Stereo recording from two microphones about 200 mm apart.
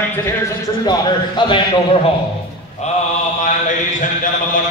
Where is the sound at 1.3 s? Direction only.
25° left (ahead or behind).